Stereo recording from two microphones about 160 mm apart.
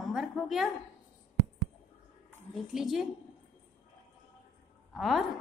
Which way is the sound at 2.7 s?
Centre (ahead or behind).